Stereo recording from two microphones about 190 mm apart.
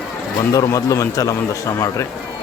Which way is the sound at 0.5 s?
15° left (ahead or behind).